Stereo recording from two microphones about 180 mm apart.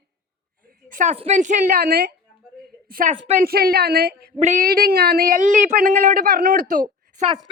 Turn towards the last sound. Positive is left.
turn(degrees=-40)  # may be behind; listen again after turning